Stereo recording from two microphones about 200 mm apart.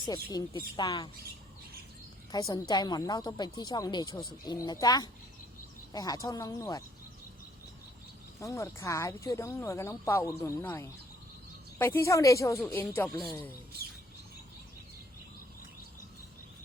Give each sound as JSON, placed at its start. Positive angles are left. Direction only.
{"t": 0.0, "sound": "a woman's voice", "side_deg": 20}
{"t": 2.3, "sound": "a woman's voice", "side_deg": 15}
{"t": 8.4, "sound": "speech", "side_deg": 15}